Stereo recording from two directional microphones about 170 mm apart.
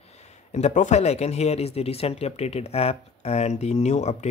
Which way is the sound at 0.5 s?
45° left (ahead or behind).